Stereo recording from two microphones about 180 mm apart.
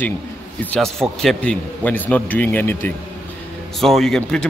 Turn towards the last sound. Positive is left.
turn(degrees=5)  # may be behind; listen again after turning